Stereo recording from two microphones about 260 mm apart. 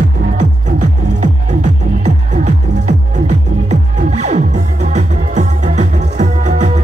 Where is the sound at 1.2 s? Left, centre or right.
Right.